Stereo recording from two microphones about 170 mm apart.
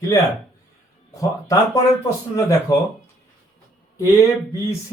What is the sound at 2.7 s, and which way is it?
Speech, 25° left (ahead or behind).